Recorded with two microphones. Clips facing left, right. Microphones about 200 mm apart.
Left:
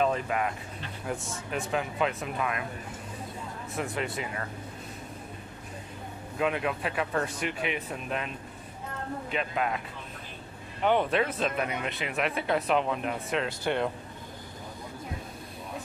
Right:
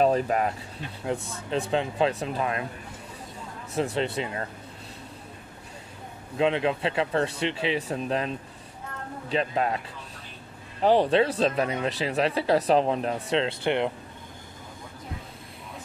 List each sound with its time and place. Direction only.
0.0 s speech: 35° right (ahead or behind)
3.7 s speech: 30° right (ahead or behind)
6.3 s speech: 25° right (ahead or behind)
10.8 s speech: 30° right (ahead or behind)
13.7 s speech: 20° right (ahead or behind)